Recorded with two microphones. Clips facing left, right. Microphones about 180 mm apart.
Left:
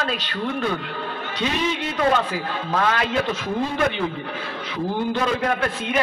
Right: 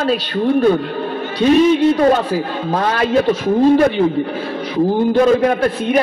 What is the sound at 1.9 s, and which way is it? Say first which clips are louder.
A man's voice: right 7 dB; 40° right (ahead or behind).